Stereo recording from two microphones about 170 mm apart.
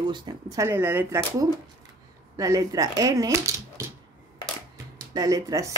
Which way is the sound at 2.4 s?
20° right (ahead or behind).